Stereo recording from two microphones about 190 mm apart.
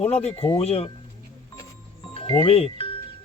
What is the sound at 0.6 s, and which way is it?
Speech, 30° left (ahead or behind).